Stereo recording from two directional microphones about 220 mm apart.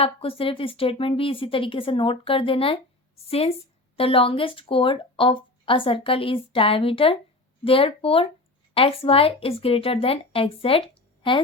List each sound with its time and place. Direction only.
0.0 s speech: 25° left (ahead or behind)